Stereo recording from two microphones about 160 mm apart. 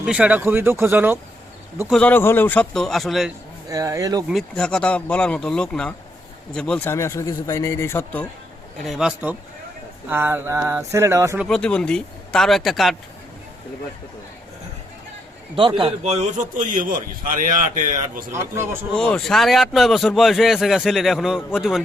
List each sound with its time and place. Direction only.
0.0 s speech: 10° right (ahead or behind)
1.9 s a man's voice: 10° left (ahead or behind)
3.7 s speech: 20° right (ahead or behind)
4.3 s a man's voice: 5° left (ahead or behind)
8.8 s a man's voice: centre (ahead or behind); by 11.3 s 20° right (ahead or behind)
11.4 s a man's voice: 5° left (ahead or behind)
15.8 s a man's voice: 45° right (ahead or behind)
18.3 s speech: 15° right (ahead or behind)
18.9 s a man's voice: 5° left (ahead or behind)